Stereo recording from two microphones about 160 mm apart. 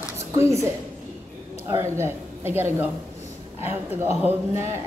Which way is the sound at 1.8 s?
15° right (ahead or behind).